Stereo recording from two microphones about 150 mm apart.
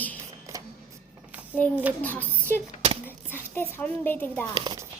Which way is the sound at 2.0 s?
10° left (ahead or behind).